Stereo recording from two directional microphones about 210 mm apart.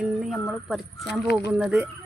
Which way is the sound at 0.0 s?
Centre (ahead or behind).